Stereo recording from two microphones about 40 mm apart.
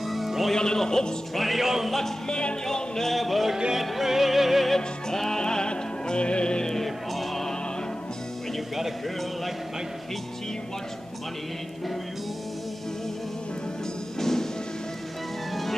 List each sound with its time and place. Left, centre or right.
0.0 s music: centre
0.6 s speech: centre
1.3 s music: centre
2.0 s speech: centre
3.2 s music: centre
4.7 s music: centre
5.4 s music: left
6.7 s music: centre
8.5 s speech: centre
14.2 s music: centre